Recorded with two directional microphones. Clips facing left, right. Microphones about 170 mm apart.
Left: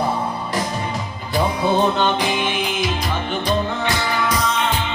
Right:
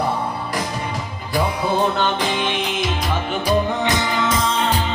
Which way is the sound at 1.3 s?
20° left (ahead or behind).